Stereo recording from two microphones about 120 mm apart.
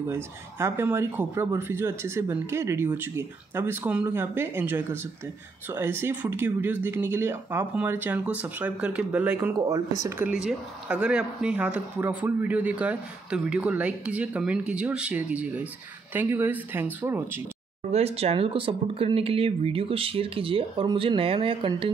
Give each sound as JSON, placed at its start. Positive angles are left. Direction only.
{"t": 0.0, "sound": "speech", "side_deg": -20}
{"t": 10.3, "sound": "speech", "side_deg": -5}
{"t": 17.9, "sound": "speech", "side_deg": -60}